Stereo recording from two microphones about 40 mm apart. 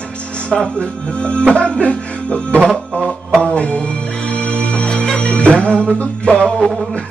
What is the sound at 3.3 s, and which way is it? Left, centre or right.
Music, left.